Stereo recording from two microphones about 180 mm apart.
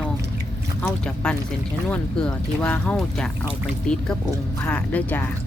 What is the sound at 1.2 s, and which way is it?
Speech, 5° left (ahead or behind).